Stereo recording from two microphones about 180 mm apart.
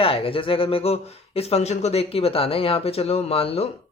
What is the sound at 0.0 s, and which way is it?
Speech, 30° left (ahead or behind).